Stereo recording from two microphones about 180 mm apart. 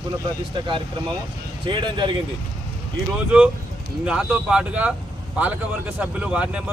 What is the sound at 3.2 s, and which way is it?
Speech, 10° right (ahead or behind).